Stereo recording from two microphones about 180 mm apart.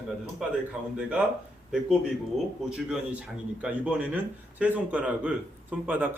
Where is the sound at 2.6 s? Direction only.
5° right (ahead or behind).